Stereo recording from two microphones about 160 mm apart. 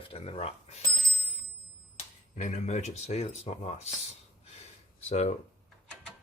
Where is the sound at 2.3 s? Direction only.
50° left (ahead or behind).